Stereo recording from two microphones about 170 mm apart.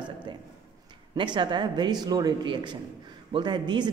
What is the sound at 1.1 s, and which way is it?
A woman's voice, 25° right (ahead or behind).